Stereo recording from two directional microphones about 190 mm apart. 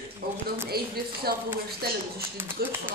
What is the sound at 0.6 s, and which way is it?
Speech, 55° right (ahead or behind).